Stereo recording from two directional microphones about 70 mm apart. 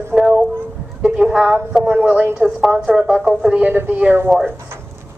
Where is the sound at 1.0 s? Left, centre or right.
Centre.